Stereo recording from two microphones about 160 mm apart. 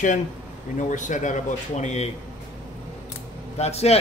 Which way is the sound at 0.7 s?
50° left (ahead or behind).